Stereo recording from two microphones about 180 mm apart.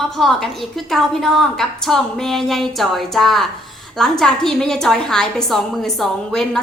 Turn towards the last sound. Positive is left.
turn(degrees=5)  # may be behind; listen again after turning